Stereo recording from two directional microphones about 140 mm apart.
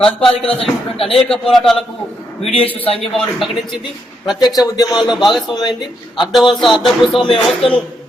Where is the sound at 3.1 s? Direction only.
Centre (ahead or behind).